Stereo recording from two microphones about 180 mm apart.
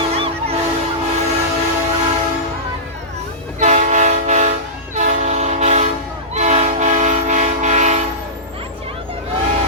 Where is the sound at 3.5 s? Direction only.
40° right (ahead or behind).